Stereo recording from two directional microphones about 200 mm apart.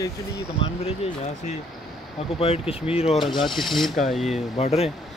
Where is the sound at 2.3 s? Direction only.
30° left (ahead or behind).